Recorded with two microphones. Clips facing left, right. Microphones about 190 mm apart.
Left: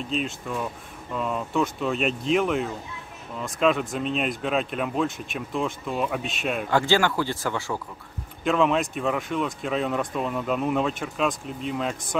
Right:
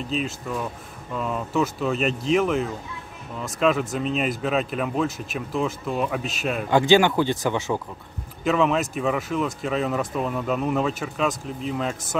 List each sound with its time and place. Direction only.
0.0 s speech: centre (ahead or behind)
6.7 s speech: 20° right (ahead or behind)
8.5 s speech: centre (ahead or behind)